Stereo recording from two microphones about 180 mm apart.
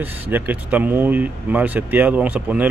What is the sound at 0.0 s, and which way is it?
Speech, 10° right (ahead or behind).